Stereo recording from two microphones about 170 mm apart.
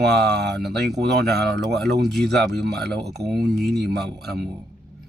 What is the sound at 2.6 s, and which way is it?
Speech, 75° right (ahead or behind).